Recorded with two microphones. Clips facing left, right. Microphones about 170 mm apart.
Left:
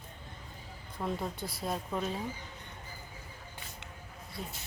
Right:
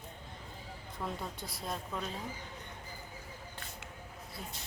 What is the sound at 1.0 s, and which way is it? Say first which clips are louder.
Speech: left 4 dB; 20° left (ahead or behind).